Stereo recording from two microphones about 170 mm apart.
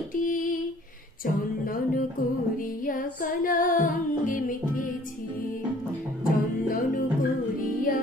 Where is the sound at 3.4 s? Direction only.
50° left (ahead or behind).